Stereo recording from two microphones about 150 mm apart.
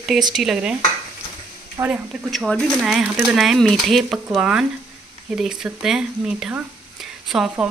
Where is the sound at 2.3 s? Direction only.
Centre (ahead or behind).